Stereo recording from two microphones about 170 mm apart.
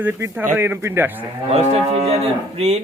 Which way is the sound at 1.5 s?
35° right (ahead or behind).